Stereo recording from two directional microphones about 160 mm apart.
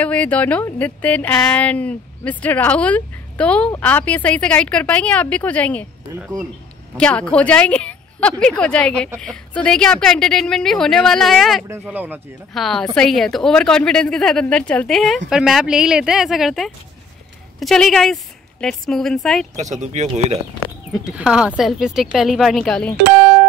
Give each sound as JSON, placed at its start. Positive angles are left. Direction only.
{"t": 0.0, "sound": "a woman's voice", "side_deg": 10}
{"t": 7.0, "sound": "a woman's voice", "side_deg": 5}
{"t": 11.9, "sound": "speech", "side_deg": -10}
{"t": 12.5, "sound": "a woman's voice", "side_deg": 0}
{"t": 19.5, "sound": "speech", "side_deg": -45}
{"t": 21.0, "sound": "a woman's voice", "side_deg": -5}